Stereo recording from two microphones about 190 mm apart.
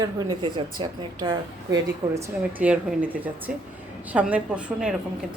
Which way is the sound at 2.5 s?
5° right (ahead or behind).